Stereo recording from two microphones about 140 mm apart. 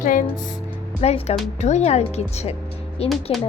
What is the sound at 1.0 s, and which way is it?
A woman's voice, 50° left (ahead or behind).